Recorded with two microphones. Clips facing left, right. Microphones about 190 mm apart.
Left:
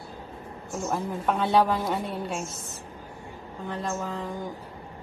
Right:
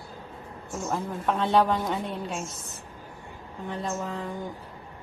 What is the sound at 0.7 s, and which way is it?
Speech, centre (ahead or behind).